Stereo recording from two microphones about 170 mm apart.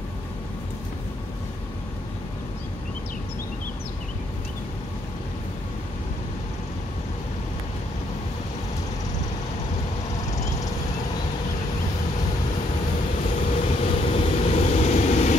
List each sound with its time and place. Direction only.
13.4 s vehicle: 35° left (ahead or behind)